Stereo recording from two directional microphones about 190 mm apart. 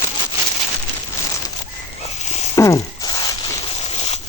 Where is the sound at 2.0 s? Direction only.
35° left (ahead or behind).